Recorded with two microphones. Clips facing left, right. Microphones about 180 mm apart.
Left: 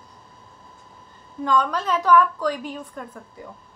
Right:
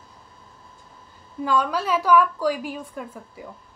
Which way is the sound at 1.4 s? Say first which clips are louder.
Left 1 dB; 10° right (ahead or behind).